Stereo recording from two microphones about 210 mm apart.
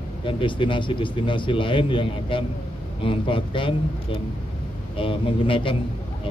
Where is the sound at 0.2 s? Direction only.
25° left (ahead or behind).